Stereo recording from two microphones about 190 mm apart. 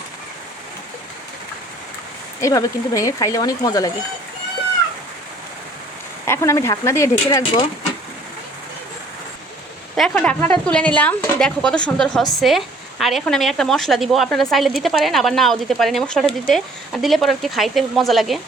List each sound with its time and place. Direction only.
2.4 s speech: 15° left (ahead or behind)
6.2 s speech: 15° left (ahead or behind)
7.3 s speech: 25° left (ahead or behind)
9.9 s speech: 5° left (ahead or behind)